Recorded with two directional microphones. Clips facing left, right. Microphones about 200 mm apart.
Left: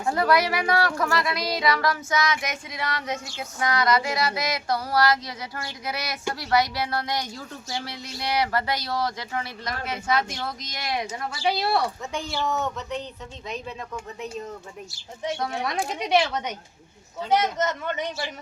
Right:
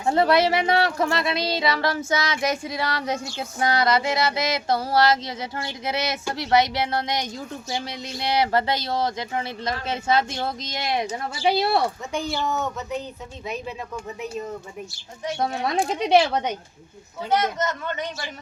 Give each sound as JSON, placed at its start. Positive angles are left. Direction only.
{"t": 0.0, "sound": "speech", "side_deg": -25}
{"t": 12.1, "sound": "speech", "side_deg": 0}
{"t": 15.4, "sound": "speech", "side_deg": -25}
{"t": 17.2, "sound": "a man's voice", "side_deg": 20}